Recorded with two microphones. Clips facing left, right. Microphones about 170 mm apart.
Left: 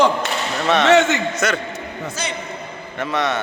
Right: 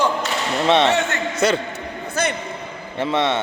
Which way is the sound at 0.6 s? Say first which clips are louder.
Right 2 dB; 25° right (ahead or behind).